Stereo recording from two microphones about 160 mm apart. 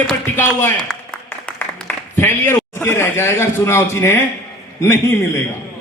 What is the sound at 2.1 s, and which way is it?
A man's voice, 15° left (ahead or behind).